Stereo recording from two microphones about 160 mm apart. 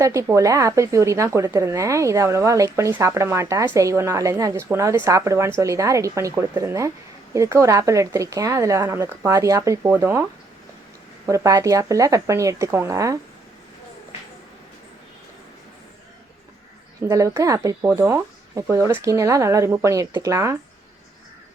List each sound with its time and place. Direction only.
0.0 s a woman's voice: 20° right (ahead or behind)
11.3 s a woman's voice: 20° right (ahead or behind)
17.0 s a woman's voice: 20° right (ahead or behind)